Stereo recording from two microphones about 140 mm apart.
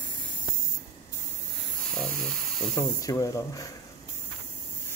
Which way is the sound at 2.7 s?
25° left (ahead or behind).